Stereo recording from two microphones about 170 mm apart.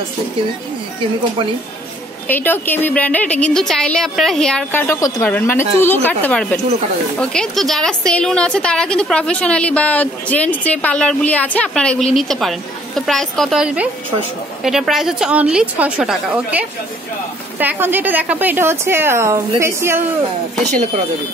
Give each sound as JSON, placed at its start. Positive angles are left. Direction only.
{"t": 2.2, "sound": "a woman's voice", "side_deg": 10}